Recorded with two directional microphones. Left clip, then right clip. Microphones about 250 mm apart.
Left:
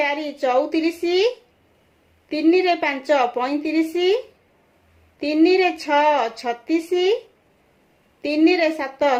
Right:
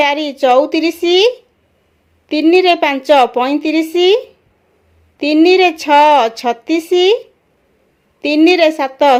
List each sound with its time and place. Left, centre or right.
0.0 s a woman's voice: right
2.3 s a woman's voice: right
8.2 s a woman's voice: right